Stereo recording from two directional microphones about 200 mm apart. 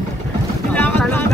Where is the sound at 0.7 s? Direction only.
10° left (ahead or behind).